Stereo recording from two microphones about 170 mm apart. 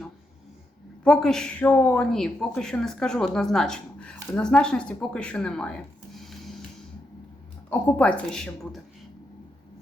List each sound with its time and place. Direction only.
1.0 s speech: 5° left (ahead or behind)
7.7 s speech: 5° left (ahead or behind)